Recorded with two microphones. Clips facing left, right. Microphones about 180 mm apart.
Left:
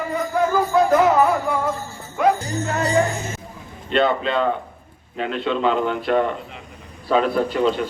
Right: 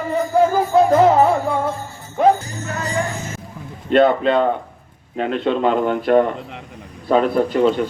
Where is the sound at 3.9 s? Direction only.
50° right (ahead or behind).